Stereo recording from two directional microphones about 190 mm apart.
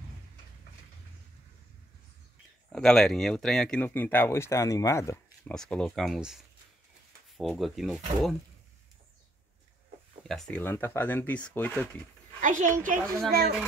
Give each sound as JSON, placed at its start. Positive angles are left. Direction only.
{"t": 2.7, "sound": "speech", "side_deg": 5}
{"t": 5.5, "sound": "speech", "side_deg": 5}
{"t": 10.2, "sound": "speech", "side_deg": 0}
{"t": 12.4, "sound": "speech", "side_deg": -40}
{"t": 13.3, "sound": "speech", "side_deg": -55}